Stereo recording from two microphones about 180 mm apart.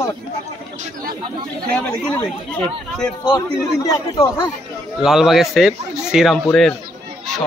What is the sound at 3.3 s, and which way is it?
A man's voice, 25° left (ahead or behind).